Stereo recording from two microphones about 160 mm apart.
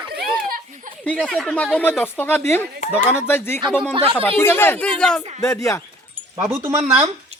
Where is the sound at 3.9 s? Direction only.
35° right (ahead or behind).